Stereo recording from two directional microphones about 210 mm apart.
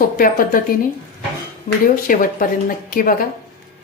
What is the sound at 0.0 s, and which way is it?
Speech, 40° left (ahead or behind).